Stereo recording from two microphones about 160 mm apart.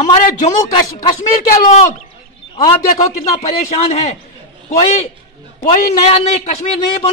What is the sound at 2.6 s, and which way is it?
A man's voice, 45° left (ahead or behind).